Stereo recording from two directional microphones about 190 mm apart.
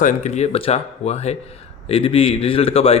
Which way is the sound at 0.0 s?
40° left (ahead or behind).